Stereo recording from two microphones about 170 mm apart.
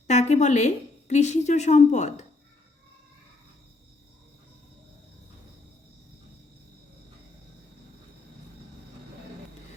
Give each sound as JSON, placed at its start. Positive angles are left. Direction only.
{"t": 0.1, "sound": "a woman's voice", "side_deg": 40}